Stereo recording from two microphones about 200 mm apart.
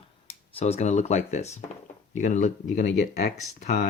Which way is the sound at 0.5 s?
30° left (ahead or behind).